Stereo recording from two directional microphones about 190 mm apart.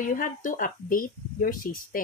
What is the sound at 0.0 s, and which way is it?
Speech, 45° left (ahead or behind).